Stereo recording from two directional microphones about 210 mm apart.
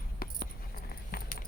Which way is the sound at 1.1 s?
45° left (ahead or behind).